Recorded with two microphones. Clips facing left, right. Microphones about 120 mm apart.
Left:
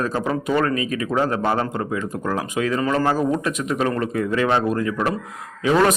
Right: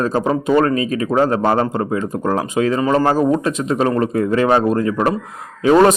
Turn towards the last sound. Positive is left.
turn(degrees=-35)  # may be behind; listen again after turning